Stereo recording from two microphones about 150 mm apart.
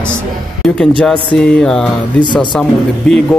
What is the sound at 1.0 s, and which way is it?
Speech, 5° left (ahead or behind).